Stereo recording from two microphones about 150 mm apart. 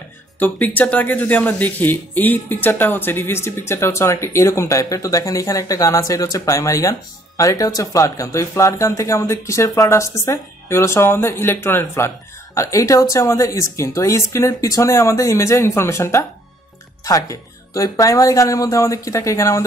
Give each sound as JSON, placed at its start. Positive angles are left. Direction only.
{"t": 0.4, "sound": "speech", "side_deg": 10}